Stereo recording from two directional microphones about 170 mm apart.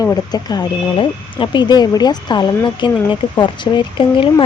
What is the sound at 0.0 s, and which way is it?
Speech, 20° left (ahead or behind).